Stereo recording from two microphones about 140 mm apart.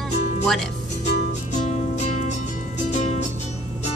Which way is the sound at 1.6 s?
55° left (ahead or behind).